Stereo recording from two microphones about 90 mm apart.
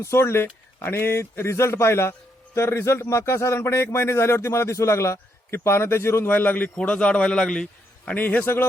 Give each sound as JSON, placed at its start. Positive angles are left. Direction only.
{"t": 0.0, "sound": "a man's voice", "side_deg": 30}